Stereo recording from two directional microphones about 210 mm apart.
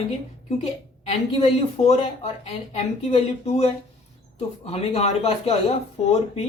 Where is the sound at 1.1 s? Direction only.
30° left (ahead or behind).